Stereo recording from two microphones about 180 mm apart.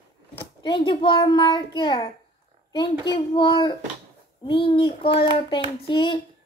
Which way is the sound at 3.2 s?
25° left (ahead or behind).